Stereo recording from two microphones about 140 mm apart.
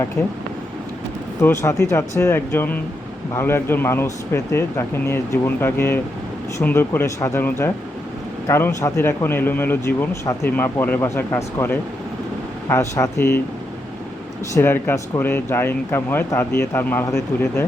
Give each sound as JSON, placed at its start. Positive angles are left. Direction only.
{"t": 1.4, "sound": "speech", "side_deg": 20}
{"t": 14.5, "sound": "speech", "side_deg": 15}